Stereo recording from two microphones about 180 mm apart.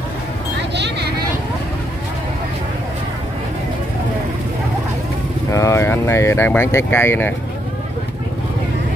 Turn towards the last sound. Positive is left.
turn(degrees=10)  # may be behind; listen again after turning